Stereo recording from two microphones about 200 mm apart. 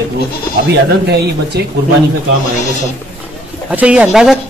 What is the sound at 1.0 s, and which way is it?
Speech, 55° right (ahead or behind).